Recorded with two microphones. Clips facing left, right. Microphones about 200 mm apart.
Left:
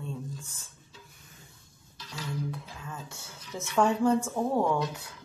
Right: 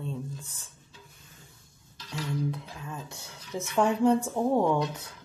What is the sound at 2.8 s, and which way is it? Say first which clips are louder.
A woman's voice: right 2 dB; 20° right (ahead or behind).